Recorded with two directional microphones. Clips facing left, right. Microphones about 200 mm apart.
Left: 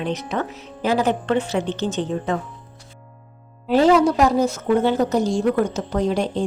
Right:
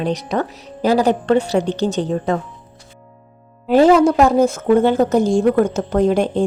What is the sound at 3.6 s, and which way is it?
A woman's voice, 50° right (ahead or behind).